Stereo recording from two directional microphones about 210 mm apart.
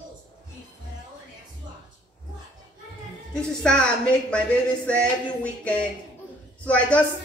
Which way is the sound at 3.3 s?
5° left (ahead or behind).